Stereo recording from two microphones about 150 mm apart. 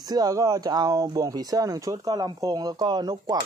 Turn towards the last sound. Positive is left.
turn(degrees=-25)  # may be behind; listen again after turning